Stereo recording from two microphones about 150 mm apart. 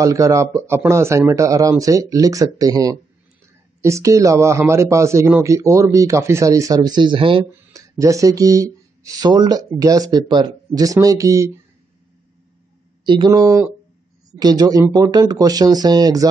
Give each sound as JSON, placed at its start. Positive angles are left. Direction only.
{"t": 0.0, "sound": "a man's voice", "side_deg": -20}
{"t": 8.0, "sound": "a man's voice", "side_deg": -20}
{"t": 13.0, "sound": "a man's voice", "side_deg": -30}